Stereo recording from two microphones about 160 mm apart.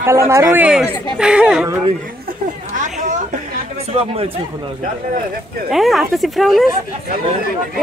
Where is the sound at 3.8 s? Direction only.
40° right (ahead or behind).